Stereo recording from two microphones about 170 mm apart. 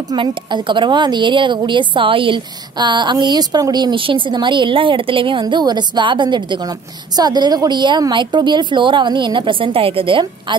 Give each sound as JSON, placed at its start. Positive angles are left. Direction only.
{"t": 0.1, "sound": "a woman's voice", "side_deg": -30}